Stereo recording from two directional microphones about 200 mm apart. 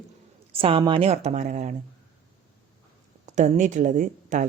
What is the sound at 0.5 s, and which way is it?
Speech, 30° right (ahead or behind).